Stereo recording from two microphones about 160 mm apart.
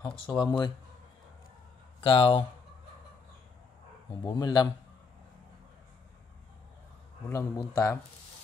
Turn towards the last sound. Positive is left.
turn(degrees=20)  # may be behind; listen again after turning